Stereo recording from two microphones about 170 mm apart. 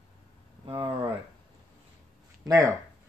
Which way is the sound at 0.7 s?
30° right (ahead or behind).